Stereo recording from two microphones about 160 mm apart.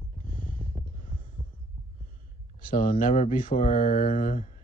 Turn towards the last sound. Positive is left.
turn(degrees=55)  # may be behind; listen again after turning